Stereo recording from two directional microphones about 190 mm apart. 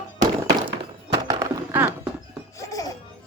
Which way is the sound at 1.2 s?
20° right (ahead or behind).